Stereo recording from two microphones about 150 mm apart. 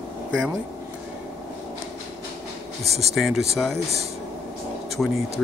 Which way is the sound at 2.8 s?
45° right (ahead or behind).